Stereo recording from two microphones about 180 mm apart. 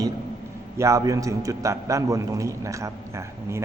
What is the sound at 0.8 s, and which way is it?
A man's voice, 15° right (ahead or behind).